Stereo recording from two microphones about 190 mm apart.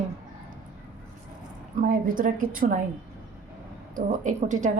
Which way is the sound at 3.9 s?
40° right (ahead or behind).